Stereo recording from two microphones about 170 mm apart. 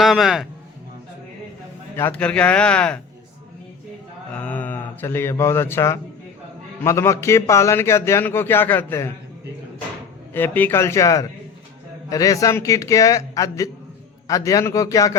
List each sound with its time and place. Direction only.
0.0 s a man's voice: centre (ahead or behind)
2.0 s a man's voice: 10° left (ahead or behind)
4.4 s a man's voice: 10° left (ahead or behind)
10.3 s a man's voice: 10° left (ahead or behind)